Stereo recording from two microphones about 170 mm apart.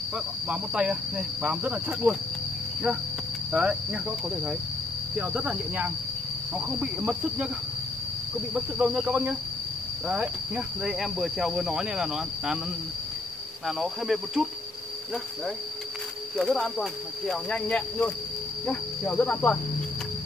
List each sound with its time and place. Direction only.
0.5 s speech: 5° right (ahead or behind)
3.5 s speech: 5° right (ahead or behind)
5.1 s speech: 5° right (ahead or behind)
8.5 s speech: 5° right (ahead or behind)
13.7 s speech: centre (ahead or behind)
16.3 s speech: centre (ahead or behind)